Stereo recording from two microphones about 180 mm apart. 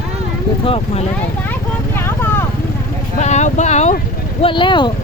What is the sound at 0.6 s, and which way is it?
Speech, 35° left (ahead or behind).